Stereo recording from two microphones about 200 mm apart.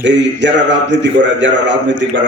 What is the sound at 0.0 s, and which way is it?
A man's voice, 65° right (ahead or behind).